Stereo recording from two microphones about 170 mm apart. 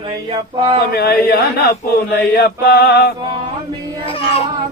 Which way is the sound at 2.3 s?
65° left (ahead or behind).